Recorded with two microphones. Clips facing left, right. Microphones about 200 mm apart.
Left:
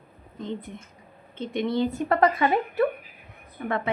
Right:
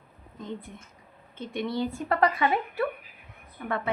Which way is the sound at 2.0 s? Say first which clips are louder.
Left 3 dB; 40° left (ahead or behind).